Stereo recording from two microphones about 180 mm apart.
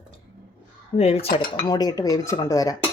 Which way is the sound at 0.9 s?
35° left (ahead or behind).